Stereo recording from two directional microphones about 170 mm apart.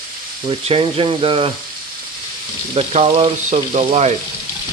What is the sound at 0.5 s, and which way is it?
Frying, 35° right (ahead or behind).